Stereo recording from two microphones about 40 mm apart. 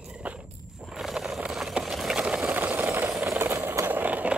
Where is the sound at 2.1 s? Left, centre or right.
Right.